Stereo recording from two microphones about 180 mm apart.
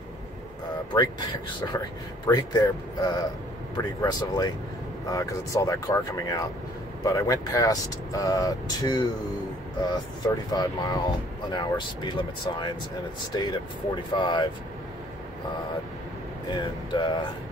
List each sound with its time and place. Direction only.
0.9 s speech: 25° left (ahead or behind)
16.4 s speech: 25° left (ahead or behind)